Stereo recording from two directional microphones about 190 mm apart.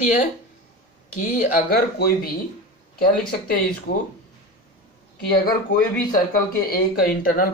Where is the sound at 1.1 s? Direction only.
40° left (ahead or behind).